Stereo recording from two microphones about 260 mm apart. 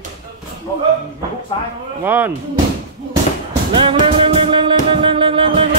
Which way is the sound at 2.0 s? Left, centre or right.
Centre.